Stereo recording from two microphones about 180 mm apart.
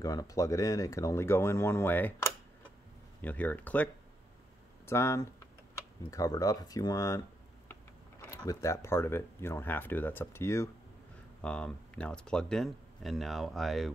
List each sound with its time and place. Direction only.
0.0 s speech: 20° left (ahead or behind)
3.2 s speech: 10° left (ahead or behind)